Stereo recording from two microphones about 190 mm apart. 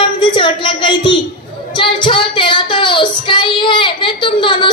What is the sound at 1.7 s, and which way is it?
Child singing, 25° left (ahead or behind).